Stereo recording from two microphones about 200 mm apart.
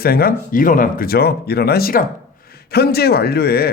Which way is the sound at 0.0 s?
50° left (ahead or behind).